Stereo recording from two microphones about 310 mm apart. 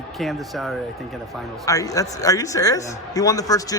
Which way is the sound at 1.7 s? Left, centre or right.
Centre.